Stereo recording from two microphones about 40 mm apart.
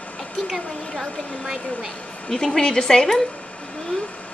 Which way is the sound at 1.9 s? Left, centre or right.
Left.